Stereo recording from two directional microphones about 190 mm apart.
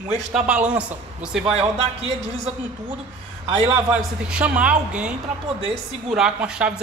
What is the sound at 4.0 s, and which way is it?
Speech, 5° right (ahead or behind).